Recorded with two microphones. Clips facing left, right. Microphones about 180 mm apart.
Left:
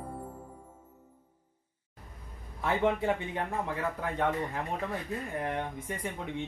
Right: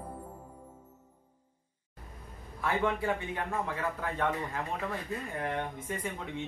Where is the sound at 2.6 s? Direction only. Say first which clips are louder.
Left 2 dB; 20° left (ahead or behind).